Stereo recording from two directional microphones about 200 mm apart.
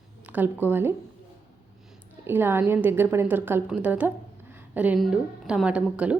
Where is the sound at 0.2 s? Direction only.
10° right (ahead or behind).